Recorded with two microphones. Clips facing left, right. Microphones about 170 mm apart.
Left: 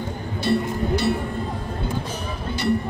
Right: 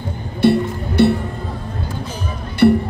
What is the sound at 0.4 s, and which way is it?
Music, 60° right (ahead or behind).